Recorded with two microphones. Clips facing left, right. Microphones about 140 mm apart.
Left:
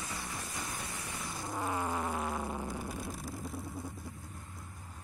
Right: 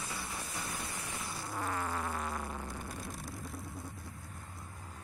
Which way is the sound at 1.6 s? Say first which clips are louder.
Left 2 dB; 15° left (ahead or behind).